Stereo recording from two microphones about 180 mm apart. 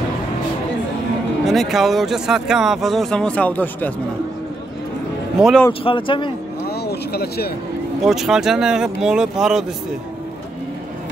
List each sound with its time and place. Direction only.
1.4 s speech: centre (ahead or behind)
5.4 s speech: centre (ahead or behind)
5.7 s speech: 30° left (ahead or behind)
6.7 s a sound: 65° left (ahead or behind)
8.0 s speech: centre (ahead or behind)